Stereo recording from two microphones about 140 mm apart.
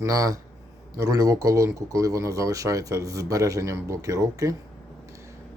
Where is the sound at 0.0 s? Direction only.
25° right (ahead or behind).